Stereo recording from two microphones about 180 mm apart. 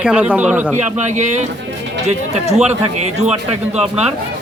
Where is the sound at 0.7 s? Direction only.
40° right (ahead or behind).